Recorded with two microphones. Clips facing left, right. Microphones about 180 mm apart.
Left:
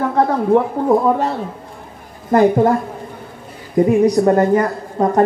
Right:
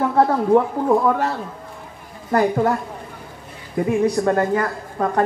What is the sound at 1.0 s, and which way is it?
Speech, 20° left (ahead or behind).